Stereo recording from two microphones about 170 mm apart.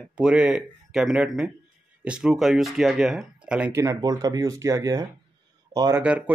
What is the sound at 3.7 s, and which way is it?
Speech, 15° right (ahead or behind).